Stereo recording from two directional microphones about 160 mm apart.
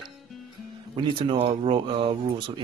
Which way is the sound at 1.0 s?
35° right (ahead or behind).